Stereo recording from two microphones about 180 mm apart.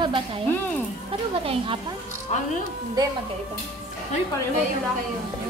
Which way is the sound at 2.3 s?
40° left (ahead or behind).